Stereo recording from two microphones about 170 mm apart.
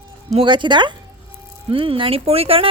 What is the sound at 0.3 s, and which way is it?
Speech, 30° right (ahead or behind).